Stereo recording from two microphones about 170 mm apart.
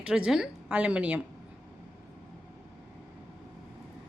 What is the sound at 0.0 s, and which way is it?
A woman's voice, 5° right (ahead or behind).